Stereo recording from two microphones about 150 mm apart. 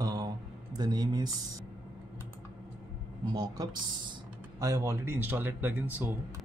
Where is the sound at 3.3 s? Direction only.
25° right (ahead or behind).